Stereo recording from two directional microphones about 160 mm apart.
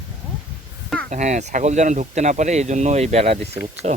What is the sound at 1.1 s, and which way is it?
Speech, 45° right (ahead or behind).